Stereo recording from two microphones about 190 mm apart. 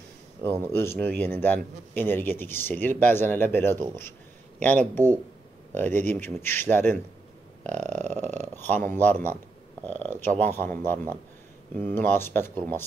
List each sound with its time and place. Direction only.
0.7 s speech: 10° left (ahead or behind)
7.7 s burping: 40° right (ahead or behind)
8.4 s speech: 10° left (ahead or behind)